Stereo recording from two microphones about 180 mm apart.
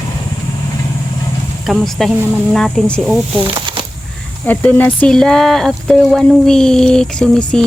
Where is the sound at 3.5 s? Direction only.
30° right (ahead or behind).